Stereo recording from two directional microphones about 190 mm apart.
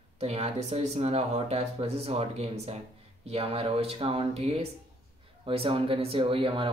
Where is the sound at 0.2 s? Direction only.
35° right (ahead or behind).